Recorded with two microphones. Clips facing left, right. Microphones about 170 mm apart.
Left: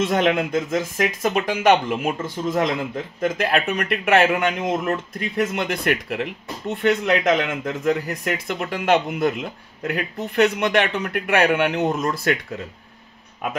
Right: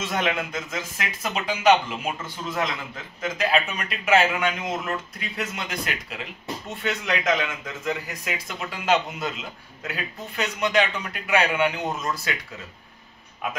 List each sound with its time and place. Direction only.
0.0 s speech: 55° left (ahead or behind)
3.2 s speech: 60° left (ahead or behind)